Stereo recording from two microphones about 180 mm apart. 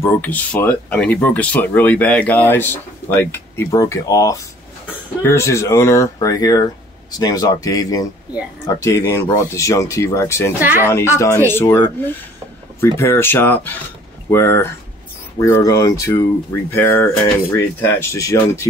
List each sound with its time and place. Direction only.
0.0 s speech: 10° left (ahead or behind)
10.6 s speech: 10° right (ahead or behind)
11.1 s speech: 15° left (ahead or behind)